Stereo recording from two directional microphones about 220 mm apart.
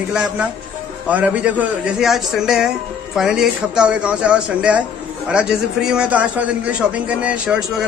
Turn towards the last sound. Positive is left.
turn(degrees=-5)  # may be behind; listen again after turning